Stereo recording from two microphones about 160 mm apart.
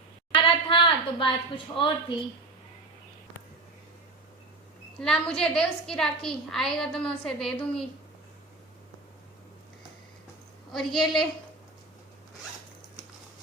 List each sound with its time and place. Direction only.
0.3 s a sound: 30° left (ahead or behind)
4.9 s a woman's voice: 5° left (ahead or behind)
10.7 s a woman's voice: centre (ahead or behind)